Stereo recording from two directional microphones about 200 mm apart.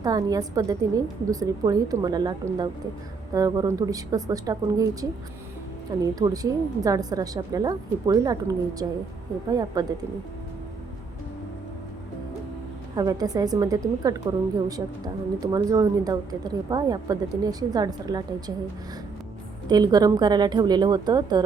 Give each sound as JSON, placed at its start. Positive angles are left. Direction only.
{"t": 0.0, "sound": "a woman's voice", "side_deg": -20}
{"t": 6.1, "sound": "a woman's voice", "side_deg": -15}
{"t": 13.0, "sound": "a woman's voice", "side_deg": -20}
{"t": 19.6, "sound": "a woman's voice", "side_deg": -20}